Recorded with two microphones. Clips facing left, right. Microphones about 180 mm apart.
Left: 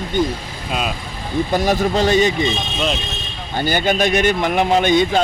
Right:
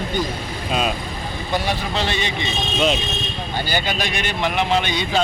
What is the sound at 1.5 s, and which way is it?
Speech, 45° left (ahead or behind).